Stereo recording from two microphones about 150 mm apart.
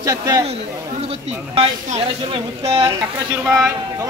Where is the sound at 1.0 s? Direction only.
40° right (ahead or behind).